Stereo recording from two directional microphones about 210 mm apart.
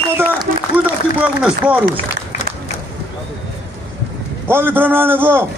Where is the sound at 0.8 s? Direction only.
5° right (ahead or behind).